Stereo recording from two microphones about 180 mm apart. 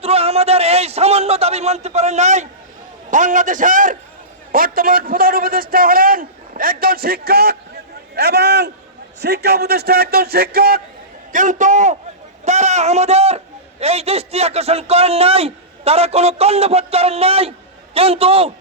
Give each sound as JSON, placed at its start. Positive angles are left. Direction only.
{"t": 0.0, "sound": "a man's voice", "side_deg": -35}
{"t": 11.3, "sound": "a man's voice", "side_deg": -45}